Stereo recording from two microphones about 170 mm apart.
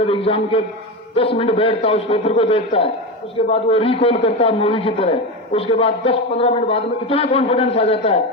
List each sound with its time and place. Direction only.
0.0 s a man's voice: 30° left (ahead or behind)